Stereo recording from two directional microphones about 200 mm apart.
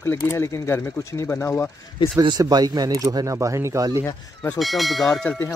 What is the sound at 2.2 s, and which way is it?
Speech, 20° right (ahead or behind).